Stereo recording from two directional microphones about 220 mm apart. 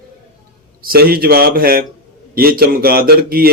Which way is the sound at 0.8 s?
45° right (ahead or behind).